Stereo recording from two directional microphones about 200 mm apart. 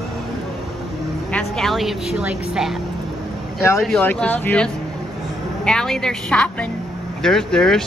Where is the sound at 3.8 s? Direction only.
5° left (ahead or behind).